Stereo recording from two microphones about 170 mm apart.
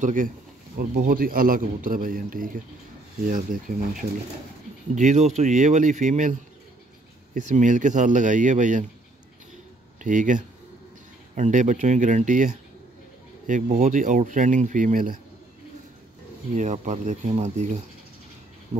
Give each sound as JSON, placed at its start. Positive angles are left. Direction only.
{"t": 0.0, "sound": "a man's voice", "side_deg": -50}
{"t": 7.3, "sound": "speech", "side_deg": -45}
{"t": 10.0, "sound": "speech", "side_deg": -50}
{"t": 16.5, "sound": "speech", "side_deg": -45}